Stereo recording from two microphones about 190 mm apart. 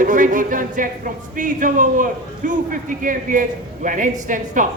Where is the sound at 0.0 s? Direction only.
45° right (ahead or behind).